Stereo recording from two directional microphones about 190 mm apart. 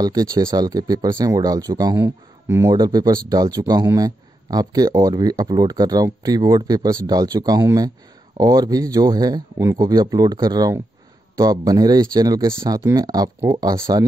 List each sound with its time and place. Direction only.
0.0 s speech: 20° right (ahead or behind)